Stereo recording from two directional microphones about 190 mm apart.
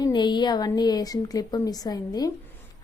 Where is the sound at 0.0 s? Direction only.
25° left (ahead or behind).